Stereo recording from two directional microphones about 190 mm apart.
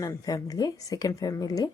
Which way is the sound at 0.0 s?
15° left (ahead or behind).